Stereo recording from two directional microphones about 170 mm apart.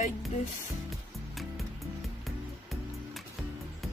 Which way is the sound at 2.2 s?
Centre (ahead or behind).